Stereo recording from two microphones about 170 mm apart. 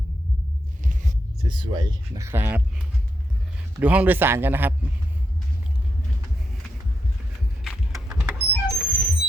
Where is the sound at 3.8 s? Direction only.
10° right (ahead or behind).